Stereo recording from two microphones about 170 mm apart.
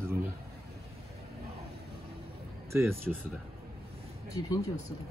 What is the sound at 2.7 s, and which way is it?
Speech, 15° right (ahead or behind).